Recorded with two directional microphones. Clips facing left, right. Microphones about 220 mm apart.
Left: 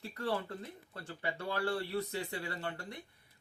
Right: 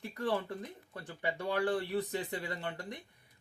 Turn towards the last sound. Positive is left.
turn(degrees=-15)  # may be behind; listen again after turning